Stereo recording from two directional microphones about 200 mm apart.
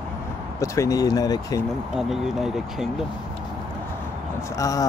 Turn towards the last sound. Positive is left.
turn(degrees=15)  # may be behind; listen again after turning